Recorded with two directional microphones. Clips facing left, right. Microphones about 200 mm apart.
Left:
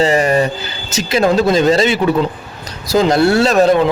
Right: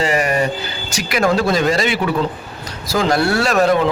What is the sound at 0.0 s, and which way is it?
A man's voice, 30° left (ahead or behind).